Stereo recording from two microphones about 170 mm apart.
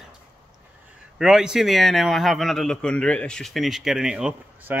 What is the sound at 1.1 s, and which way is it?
A man's voice, 5° right (ahead or behind).